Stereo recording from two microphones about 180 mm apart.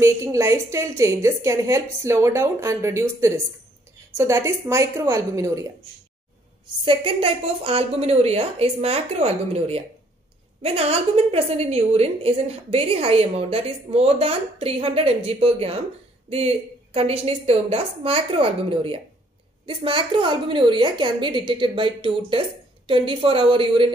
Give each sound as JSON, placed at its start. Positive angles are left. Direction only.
{"t": 0.0, "sound": "a woman's voice", "side_deg": -15}
{"t": 6.8, "sound": "a woman's voice", "side_deg": -30}